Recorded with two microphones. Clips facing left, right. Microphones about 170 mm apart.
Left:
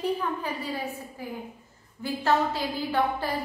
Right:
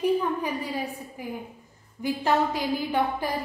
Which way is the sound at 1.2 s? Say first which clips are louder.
Right 4 dB; 15° right (ahead or behind).